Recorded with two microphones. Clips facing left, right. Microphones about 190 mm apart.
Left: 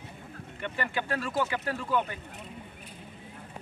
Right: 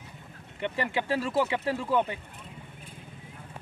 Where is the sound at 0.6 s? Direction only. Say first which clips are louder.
Right 3 dB; 25° right (ahead or behind).